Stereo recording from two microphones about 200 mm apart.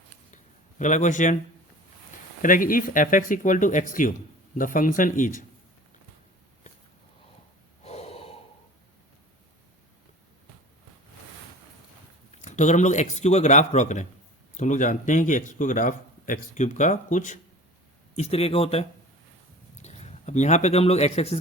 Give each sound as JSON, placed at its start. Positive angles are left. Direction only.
{"t": 0.8, "sound": "speech", "side_deg": 40}
{"t": 2.4, "sound": "speech", "side_deg": 40}
{"t": 7.9, "sound": "gasp", "side_deg": 30}
{"t": 12.5, "sound": "speech", "side_deg": 35}